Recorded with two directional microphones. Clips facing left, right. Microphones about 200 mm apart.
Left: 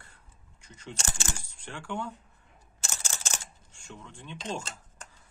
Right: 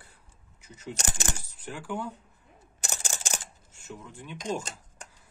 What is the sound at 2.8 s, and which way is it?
Camera, 15° right (ahead or behind).